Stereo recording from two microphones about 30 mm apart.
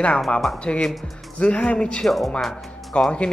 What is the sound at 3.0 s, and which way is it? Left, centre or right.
Speech, left.